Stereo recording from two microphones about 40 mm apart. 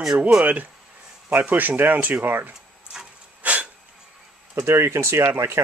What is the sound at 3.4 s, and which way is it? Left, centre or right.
Sneeze, right.